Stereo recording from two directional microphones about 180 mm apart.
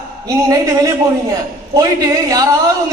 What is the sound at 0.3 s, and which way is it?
A man's voice, 20° right (ahead or behind).